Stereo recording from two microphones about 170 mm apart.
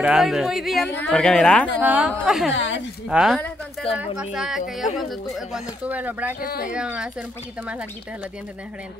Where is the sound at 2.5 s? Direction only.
90° left.